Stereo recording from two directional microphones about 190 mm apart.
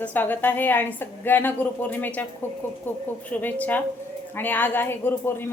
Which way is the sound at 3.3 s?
10° left (ahead or behind).